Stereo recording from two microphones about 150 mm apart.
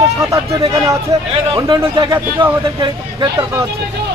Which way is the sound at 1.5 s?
20° right (ahead or behind).